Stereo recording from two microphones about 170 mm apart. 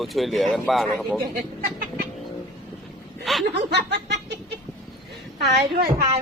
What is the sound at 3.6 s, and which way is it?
Snicker, 80° right.